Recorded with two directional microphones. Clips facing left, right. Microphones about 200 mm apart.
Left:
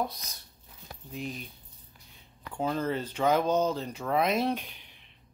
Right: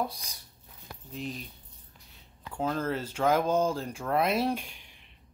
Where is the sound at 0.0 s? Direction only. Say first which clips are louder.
Even; 10° right (ahead or behind).